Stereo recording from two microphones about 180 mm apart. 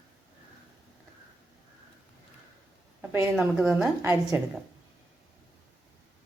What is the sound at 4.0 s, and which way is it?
Speech, 15° right (ahead or behind).